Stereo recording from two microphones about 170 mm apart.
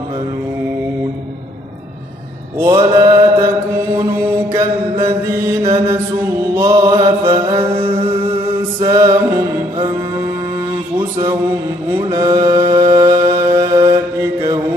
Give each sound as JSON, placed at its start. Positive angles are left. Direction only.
{"t": 2.6, "sound": "mantra", "side_deg": -20}
{"t": 5.6, "sound": "mantra", "side_deg": -30}
{"t": 6.5, "sound": "mantra", "side_deg": -20}
{"t": 7.2, "sound": "music", "side_deg": -25}
{"t": 12.0, "sound": "music", "side_deg": -20}
{"t": 13.7, "sound": "mantra", "side_deg": -30}